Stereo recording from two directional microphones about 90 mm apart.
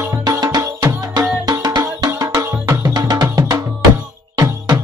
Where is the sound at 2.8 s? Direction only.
50° right (ahead or behind).